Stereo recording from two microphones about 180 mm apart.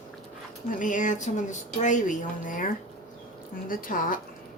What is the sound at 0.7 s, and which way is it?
Speech, 45° left (ahead or behind).